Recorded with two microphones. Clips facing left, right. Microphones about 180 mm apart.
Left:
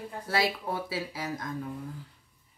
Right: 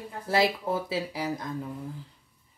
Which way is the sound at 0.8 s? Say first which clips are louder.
Right 4 dB; 25° right (ahead or behind).